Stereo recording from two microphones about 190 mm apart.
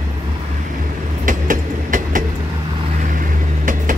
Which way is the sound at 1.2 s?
45° right (ahead or behind).